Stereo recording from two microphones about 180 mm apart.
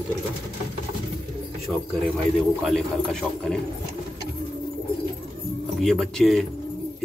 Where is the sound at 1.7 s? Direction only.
Centre (ahead or behind).